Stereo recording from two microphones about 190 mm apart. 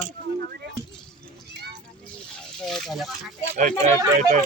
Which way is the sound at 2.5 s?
5° left (ahead or behind).